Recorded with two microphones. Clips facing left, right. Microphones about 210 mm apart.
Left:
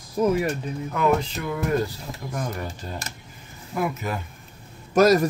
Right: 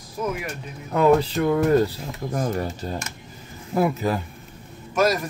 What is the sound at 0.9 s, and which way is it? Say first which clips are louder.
Music: right 6 dB; 35° right (ahead or behind).